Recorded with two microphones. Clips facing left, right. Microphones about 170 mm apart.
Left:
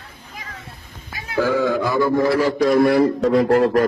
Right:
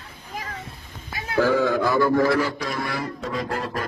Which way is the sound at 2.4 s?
45° left (ahead or behind).